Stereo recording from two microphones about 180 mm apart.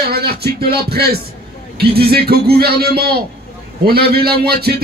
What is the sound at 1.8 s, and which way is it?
A man's voice, 60° right (ahead or behind).